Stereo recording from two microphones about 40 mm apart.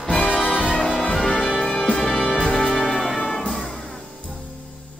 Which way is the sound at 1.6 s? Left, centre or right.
Left.